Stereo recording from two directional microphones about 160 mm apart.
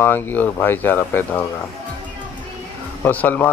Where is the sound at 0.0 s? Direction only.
10° left (ahead or behind).